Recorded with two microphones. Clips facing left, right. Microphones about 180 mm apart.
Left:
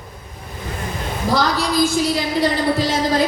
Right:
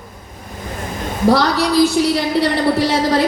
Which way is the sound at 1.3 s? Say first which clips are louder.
Right 4 dB; 65° right (ahead or behind).